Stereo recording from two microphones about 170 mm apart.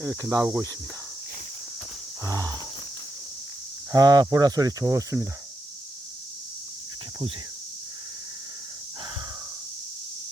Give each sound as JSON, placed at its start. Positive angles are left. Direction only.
{"t": 0.0, "sound": "speech", "side_deg": -5}
{"t": 2.2, "sound": "speech", "side_deg": -20}
{"t": 3.9, "sound": "speech", "side_deg": -25}